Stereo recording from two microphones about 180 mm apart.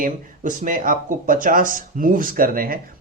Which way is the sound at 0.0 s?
45° right (ahead or behind).